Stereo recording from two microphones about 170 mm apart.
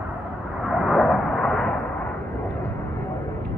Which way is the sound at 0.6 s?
Centre (ahead or behind).